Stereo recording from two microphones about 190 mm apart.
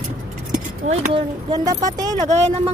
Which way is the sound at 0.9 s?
25° right (ahead or behind).